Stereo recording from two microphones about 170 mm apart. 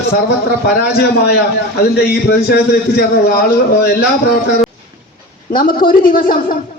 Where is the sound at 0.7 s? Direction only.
70° left (ahead or behind).